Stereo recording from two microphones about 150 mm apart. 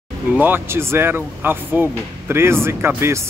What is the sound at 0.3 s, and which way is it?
Speech, 10° right (ahead or behind).